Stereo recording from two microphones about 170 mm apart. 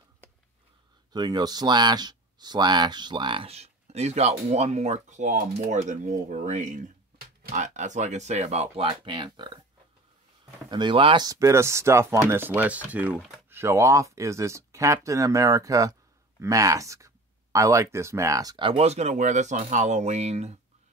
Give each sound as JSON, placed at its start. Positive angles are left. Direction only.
{"t": 1.1, "sound": "speech", "side_deg": -25}
{"t": 10.7, "sound": "speech", "side_deg": -25}